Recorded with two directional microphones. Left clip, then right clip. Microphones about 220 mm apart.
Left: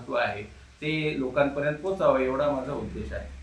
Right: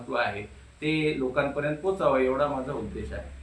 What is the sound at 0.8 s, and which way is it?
Speech, 15° right (ahead or behind).